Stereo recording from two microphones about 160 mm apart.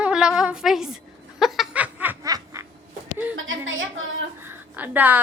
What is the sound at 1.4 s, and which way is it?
Snicker, centre (ahead or behind).